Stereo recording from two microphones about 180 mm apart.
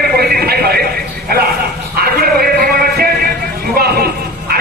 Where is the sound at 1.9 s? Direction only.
60° right (ahead or behind).